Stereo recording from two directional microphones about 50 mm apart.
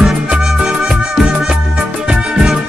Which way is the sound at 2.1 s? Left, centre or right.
Centre.